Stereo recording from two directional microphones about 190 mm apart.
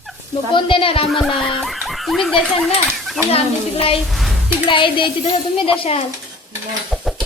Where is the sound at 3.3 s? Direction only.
30° left (ahead or behind).